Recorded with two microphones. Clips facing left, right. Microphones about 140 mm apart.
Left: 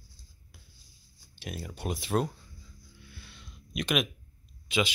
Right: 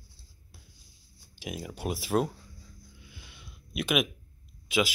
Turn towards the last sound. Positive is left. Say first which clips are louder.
# right 2 dB
turn(degrees=-10)  # may be behind; listen again after turning